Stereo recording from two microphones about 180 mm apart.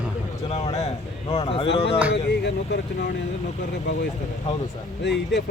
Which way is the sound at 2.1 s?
65° left (ahead or behind).